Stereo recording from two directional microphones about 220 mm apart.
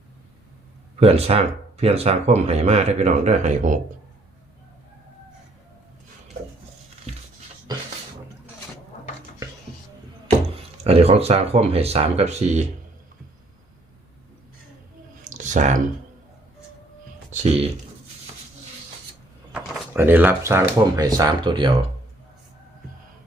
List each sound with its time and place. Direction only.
0.9 s speech: 30° right (ahead or behind)
7.1 s a sound: 25° right (ahead or behind)
10.8 s speech: 25° right (ahead or behind)
15.3 s a sound: 35° right (ahead or behind)
17.3 s speech: 30° right (ahead or behind)
19.5 s speech: 10° right (ahead or behind)